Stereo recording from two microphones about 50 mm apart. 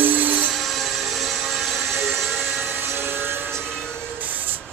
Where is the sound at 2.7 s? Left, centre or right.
Right.